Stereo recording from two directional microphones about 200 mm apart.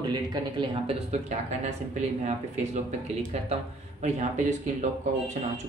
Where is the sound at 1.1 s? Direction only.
35° right (ahead or behind).